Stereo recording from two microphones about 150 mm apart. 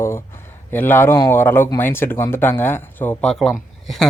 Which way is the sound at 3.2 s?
5° left (ahead or behind).